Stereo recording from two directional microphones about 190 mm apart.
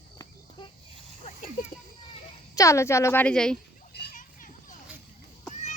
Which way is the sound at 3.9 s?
60° left (ahead or behind).